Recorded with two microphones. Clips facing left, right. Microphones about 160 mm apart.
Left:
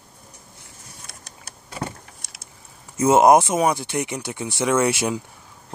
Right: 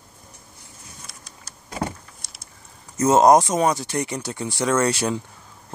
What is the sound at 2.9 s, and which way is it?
Speech, 10° left (ahead or behind).